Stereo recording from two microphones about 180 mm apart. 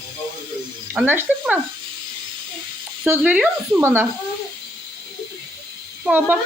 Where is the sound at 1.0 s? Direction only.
10° right (ahead or behind).